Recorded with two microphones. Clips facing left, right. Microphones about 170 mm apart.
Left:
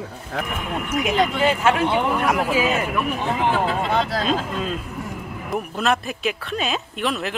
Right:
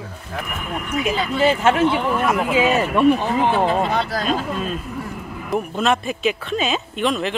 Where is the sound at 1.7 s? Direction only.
15° left (ahead or behind).